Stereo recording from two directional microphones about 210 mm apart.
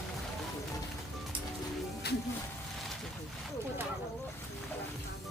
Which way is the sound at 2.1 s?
50° left (ahead or behind).